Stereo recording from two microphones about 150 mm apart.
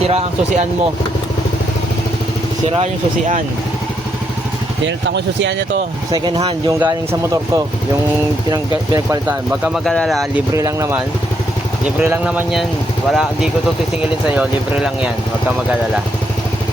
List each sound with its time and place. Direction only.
0.1 s speech: 45° right (ahead or behind)
2.6 s speech: 40° right (ahead or behind)
6.1 s speech: 30° right (ahead or behind)
9.2 s speech: 10° right (ahead or behind)
9.7 s speech: 5° left (ahead or behind)
10.5 s speech: 20° right (ahead or behind)
11.9 s speech: 10° right (ahead or behind)